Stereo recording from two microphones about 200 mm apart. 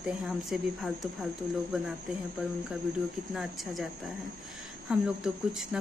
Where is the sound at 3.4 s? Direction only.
Centre (ahead or behind).